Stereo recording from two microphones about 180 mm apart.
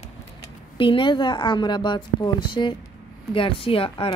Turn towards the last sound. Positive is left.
turn(degrees=30)  # may be behind; listen again after turning